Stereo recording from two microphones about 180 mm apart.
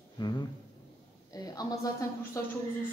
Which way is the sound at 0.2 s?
25° left (ahead or behind).